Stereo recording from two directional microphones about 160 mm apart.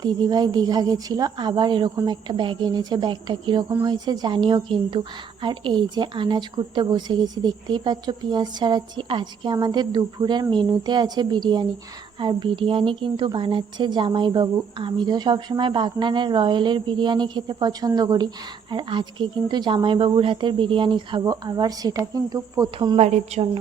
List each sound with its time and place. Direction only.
0.0 s a woman's voice: 25° right (ahead or behind)
23.0 s a woman's voice: 45° right (ahead or behind)